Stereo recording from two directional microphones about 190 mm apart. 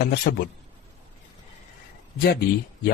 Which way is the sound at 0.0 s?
50° left (ahead or behind).